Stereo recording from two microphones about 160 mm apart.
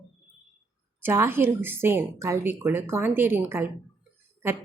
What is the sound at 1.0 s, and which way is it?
Speech, 15° right (ahead or behind).